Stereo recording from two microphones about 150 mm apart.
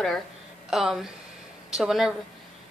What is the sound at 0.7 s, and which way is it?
Speech, centre (ahead or behind).